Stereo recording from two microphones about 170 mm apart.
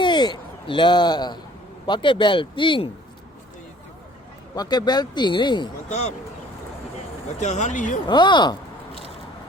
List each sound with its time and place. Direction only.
0.0 s speech: 25° left (ahead or behind)
4.5 s speech: 25° left (ahead or behind)
5.9 s speech: 40° left (ahead or behind)
7.3 s speech: 45° left (ahead or behind)
8.0 s speech: 25° left (ahead or behind)